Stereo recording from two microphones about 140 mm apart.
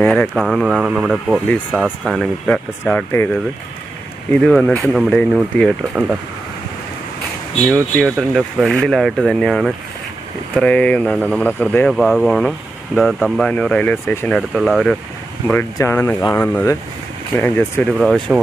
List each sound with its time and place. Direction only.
0.0 s speech: 10° left (ahead or behind)
0.3 s speech: centre (ahead or behind)
2.4 s speech: 10° left (ahead or behind)
4.3 s speech: 10° left (ahead or behind)
7.9 s speech: centre (ahead or behind)
14.5 s speech: centre (ahead or behind)
15.4 s speech: 15° left (ahead or behind)
17.9 s speech: centre (ahead or behind)